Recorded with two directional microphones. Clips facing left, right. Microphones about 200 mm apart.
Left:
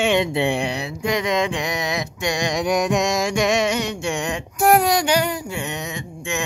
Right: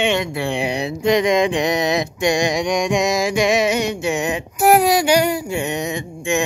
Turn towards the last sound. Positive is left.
turn(degrees=-15)  # may be behind; listen again after turning